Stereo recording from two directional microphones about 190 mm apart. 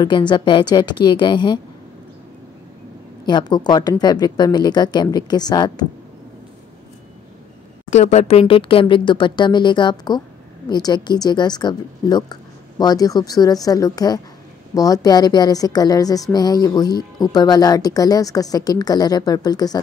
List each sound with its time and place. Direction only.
0.0 s a woman's voice: 25° left (ahead or behind)
3.3 s a woman's voice: 20° left (ahead or behind)
7.9 s a woman's voice: 35° left (ahead or behind); by 19.8 s 20° left (ahead or behind)